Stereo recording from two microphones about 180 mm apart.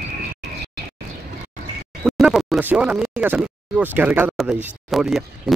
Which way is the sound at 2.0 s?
Centre (ahead or behind).